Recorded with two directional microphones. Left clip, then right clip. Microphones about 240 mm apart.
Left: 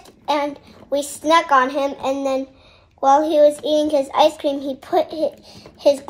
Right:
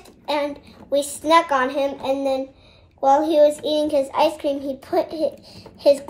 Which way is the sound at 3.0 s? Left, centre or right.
Centre.